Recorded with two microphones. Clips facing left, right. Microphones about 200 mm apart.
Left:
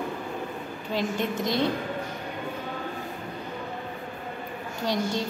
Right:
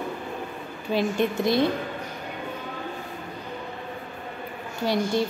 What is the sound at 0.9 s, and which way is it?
Speech, 15° left (ahead or behind).